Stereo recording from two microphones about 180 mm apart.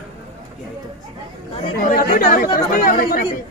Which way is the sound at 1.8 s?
55° left (ahead or behind).